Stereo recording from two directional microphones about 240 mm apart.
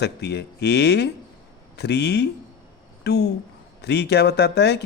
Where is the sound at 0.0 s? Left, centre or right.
Left.